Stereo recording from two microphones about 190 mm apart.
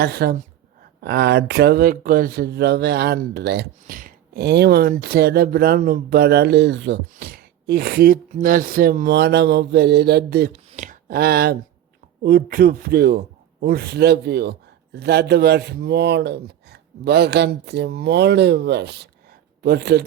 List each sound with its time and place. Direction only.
0.0 s a woman's voice: 55° right (ahead or behind)
10.5 s a sound: 40° right (ahead or behind)
12.2 s speech: 50° right (ahead or behind)